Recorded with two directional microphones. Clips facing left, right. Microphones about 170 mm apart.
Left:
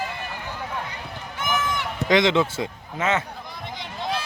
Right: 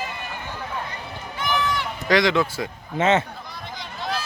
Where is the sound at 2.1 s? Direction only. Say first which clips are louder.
Even; 20° left (ahead or behind).